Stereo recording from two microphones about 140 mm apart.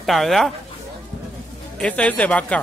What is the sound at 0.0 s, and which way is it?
Speech, centre (ahead or behind).